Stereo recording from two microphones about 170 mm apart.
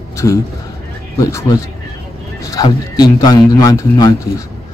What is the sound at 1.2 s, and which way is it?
A man's voice, 20° left (ahead or behind).